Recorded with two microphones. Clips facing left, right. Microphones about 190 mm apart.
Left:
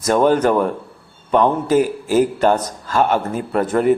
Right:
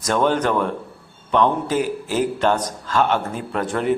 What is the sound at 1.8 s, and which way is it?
Speech, 45° left (ahead or behind).